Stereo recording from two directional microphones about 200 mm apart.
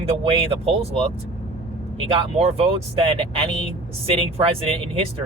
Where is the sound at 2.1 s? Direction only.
30° right (ahead or behind).